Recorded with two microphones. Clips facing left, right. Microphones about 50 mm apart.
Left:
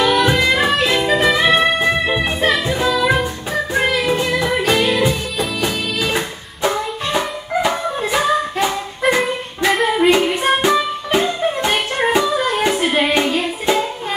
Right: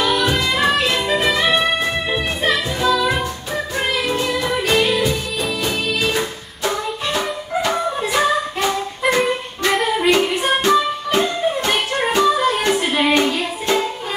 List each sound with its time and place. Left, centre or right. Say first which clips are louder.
0.0 s music: left 3 dB; centre